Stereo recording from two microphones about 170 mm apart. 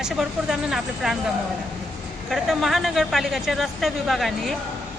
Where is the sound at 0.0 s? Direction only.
5° right (ahead or behind).